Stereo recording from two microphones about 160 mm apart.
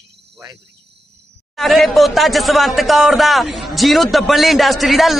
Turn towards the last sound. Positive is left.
turn(degrees=0)  # may be behind; listen again after turning